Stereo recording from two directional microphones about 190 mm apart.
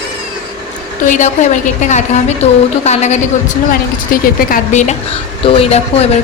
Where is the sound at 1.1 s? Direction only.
40° left (ahead or behind).